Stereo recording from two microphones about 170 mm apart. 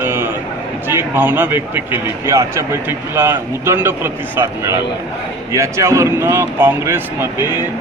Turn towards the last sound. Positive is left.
turn(degrees=-15)  # may be behind; listen again after turning